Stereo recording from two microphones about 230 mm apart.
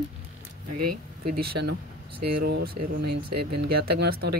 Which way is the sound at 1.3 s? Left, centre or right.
Right.